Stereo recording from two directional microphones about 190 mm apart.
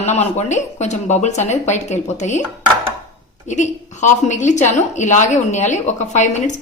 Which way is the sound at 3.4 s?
40° left (ahead or behind).